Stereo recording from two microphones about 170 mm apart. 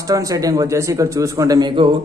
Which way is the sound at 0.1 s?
20° right (ahead or behind).